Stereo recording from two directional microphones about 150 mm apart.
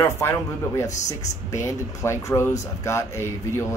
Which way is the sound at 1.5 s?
20° left (ahead or behind).